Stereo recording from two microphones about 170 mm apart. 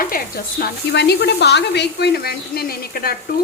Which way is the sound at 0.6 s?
75° left (ahead or behind).